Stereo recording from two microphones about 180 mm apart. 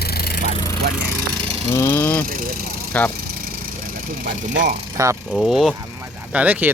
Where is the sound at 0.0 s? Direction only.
60° left (ahead or behind).